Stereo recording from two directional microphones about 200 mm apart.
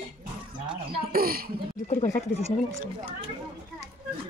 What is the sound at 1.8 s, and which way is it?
Speech, 35° left (ahead or behind).